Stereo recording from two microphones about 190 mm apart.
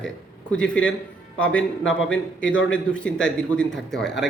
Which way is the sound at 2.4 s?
80° left.